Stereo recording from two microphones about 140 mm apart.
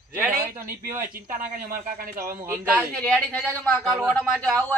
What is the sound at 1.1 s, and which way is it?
Speech, 90° right.